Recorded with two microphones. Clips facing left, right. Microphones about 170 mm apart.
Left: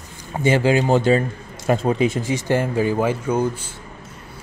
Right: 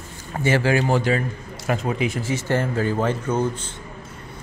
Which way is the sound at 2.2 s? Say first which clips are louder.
Left 2 dB; 15° left (ahead or behind).